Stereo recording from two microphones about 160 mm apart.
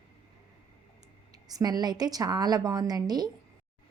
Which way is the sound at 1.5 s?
25° right (ahead or behind).